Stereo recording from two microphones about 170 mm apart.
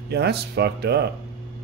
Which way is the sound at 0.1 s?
75° right (ahead or behind).